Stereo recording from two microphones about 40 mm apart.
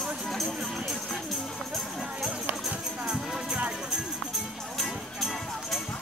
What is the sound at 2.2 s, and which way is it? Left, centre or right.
Music, centre.